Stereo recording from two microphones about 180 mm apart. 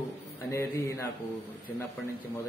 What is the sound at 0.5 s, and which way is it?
Speech, 15° left (ahead or behind).